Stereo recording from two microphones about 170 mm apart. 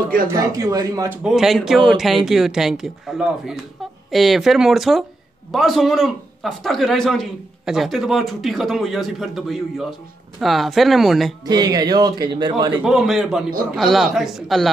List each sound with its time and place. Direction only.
0.3 s speech: 20° right (ahead or behind)
1.2 s a man's voice: 5° right (ahead or behind)
11.4 s speech: 25° right (ahead or behind)
12.8 s a man's voice: centre (ahead or behind)